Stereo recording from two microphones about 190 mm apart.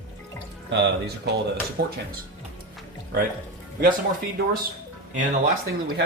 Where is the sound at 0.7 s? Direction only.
60° right (ahead or behind).